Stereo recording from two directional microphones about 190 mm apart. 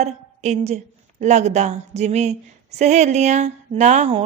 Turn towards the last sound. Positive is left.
turn(degrees=-35)  # may be behind; listen again after turning